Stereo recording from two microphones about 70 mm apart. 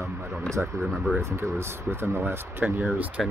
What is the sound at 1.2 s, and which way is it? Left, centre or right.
Speech, right.